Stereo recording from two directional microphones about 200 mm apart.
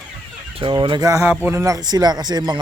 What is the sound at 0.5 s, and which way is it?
Speech, 25° right (ahead or behind).